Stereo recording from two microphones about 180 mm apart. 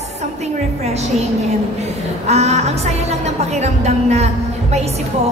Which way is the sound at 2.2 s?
35° right (ahead or behind).